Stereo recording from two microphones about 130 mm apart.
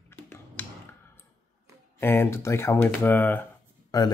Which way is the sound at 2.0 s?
20° left (ahead or behind).